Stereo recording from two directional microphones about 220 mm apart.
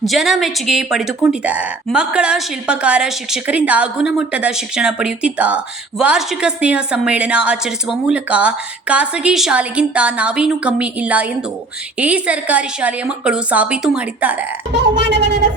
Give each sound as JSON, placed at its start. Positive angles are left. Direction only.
{"t": 0.0, "sound": "speech", "side_deg": 0}
{"t": 14.7, "sound": "speech", "side_deg": -50}